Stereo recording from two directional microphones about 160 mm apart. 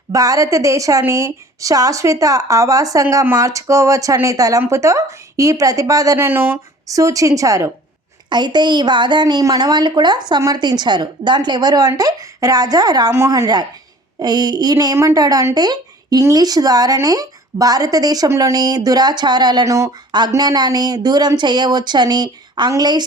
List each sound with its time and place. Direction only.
0.1 s a woman's voice: 20° right (ahead or behind)